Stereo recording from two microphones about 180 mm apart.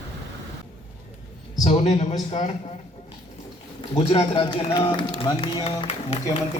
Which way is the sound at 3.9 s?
35° left (ahead or behind).